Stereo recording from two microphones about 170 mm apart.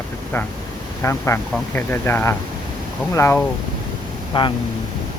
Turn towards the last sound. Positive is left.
turn(degrees=25)  # may be behind; listen again after turning